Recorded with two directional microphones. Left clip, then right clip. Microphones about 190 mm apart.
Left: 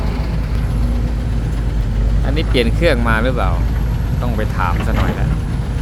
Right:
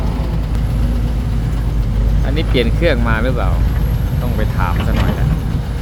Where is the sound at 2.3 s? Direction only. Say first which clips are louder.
Even; 5° left (ahead or behind).